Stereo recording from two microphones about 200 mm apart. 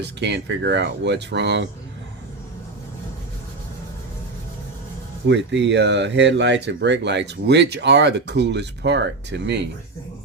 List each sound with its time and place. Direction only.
0.0 s speech: 60° right (ahead or behind)
5.3 s speech: 60° right (ahead or behind)